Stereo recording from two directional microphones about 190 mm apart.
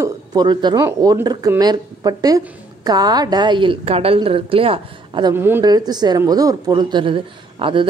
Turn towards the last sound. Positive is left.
turn(degrees=-25)  # may be behind; listen again after turning